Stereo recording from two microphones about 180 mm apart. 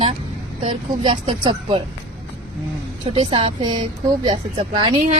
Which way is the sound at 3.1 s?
30° right (ahead or behind).